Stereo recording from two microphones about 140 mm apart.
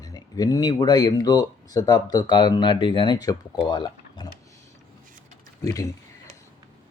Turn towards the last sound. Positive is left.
turn(degrees=25)  # may be behind; listen again after turning